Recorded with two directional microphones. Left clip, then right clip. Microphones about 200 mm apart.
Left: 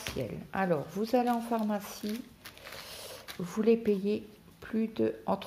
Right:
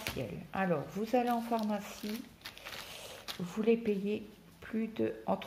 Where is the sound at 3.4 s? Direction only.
35° left (ahead or behind).